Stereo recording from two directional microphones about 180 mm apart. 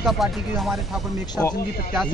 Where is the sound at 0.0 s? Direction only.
Centre (ahead or behind).